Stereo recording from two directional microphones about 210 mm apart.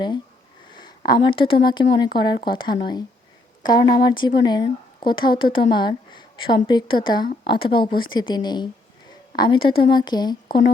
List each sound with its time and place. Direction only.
0.7 s speech: 20° left (ahead or behind)